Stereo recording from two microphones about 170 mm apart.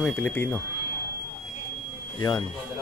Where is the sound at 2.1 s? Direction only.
20° left (ahead or behind).